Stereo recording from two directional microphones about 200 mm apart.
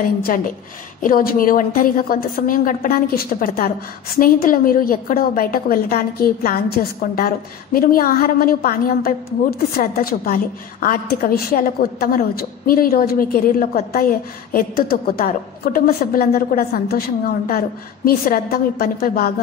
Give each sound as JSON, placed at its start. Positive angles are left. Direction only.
{"t": 1.0, "sound": "a woman's voice", "side_deg": 45}